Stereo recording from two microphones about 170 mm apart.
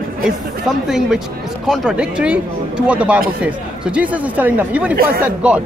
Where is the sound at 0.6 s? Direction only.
5° right (ahead or behind).